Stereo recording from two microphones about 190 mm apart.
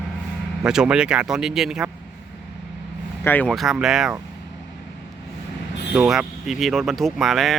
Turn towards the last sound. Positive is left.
turn(degrees=0)  # may be behind; listen again after turning